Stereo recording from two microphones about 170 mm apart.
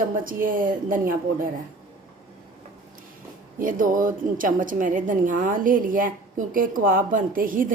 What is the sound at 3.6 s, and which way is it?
A woman's voice, 50° right (ahead or behind).